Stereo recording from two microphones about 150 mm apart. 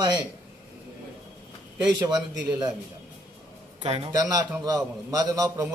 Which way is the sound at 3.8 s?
40° right (ahead or behind).